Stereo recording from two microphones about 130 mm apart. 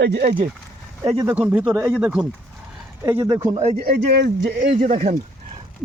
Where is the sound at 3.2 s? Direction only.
35° right (ahead or behind).